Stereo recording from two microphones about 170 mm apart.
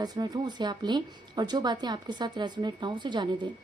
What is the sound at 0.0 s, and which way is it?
A woman's voice, 25° right (ahead or behind).